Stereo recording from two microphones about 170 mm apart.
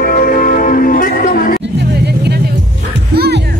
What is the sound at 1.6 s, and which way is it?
Vehicle, 75° right (ahead or behind).